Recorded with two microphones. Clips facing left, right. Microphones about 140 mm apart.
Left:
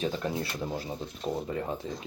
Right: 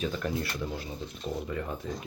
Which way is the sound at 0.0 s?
30° left (ahead or behind).